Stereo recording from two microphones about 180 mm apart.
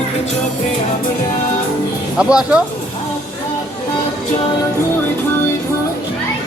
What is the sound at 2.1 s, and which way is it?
Speech, 5° right (ahead or behind).